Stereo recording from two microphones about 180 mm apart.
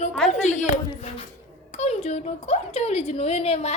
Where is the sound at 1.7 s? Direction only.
35° left (ahead or behind).